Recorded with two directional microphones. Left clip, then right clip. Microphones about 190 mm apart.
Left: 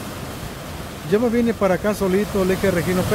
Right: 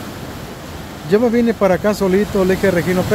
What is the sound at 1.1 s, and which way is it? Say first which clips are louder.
Speech: right 5 dB; 20° right (ahead or behind).